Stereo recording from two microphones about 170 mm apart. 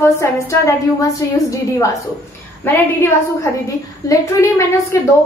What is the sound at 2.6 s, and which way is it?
A woman's voice, 15° left (ahead or behind).